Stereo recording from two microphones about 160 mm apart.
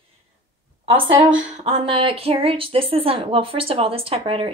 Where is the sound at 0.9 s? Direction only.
35° right (ahead or behind).